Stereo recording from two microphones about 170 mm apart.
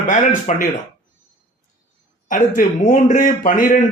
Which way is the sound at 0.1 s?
45° left (ahead or behind).